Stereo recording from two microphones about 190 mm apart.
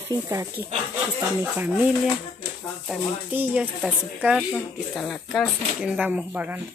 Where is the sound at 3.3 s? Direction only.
10° right (ahead or behind).